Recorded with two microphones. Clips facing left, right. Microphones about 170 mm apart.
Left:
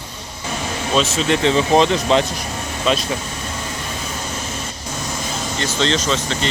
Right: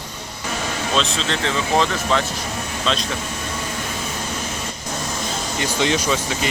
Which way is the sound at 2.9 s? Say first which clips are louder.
Left 5 dB; 10° left (ahead or behind).